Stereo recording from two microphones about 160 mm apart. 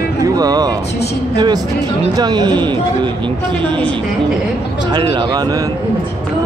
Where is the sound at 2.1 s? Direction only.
25° right (ahead or behind).